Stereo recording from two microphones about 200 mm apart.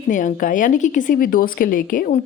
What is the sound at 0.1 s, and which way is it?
Speech, 40° left (ahead or behind).